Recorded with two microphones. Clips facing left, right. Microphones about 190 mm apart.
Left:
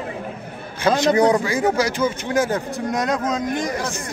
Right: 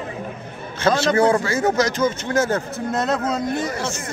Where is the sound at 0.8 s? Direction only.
15° left (ahead or behind).